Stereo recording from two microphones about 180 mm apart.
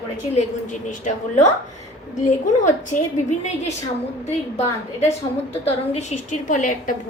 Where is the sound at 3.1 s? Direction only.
40° left (ahead or behind).